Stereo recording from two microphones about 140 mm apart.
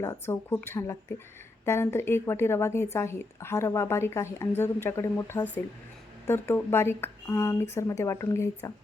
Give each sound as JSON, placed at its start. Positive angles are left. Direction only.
{"t": 0.0, "sound": "a woman's voice", "side_deg": 20}